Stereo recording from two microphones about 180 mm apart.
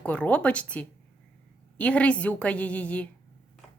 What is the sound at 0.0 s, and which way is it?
A woman's voice, 5° left (ahead or behind).